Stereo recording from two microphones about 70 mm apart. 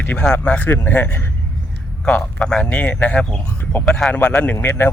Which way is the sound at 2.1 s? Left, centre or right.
Centre.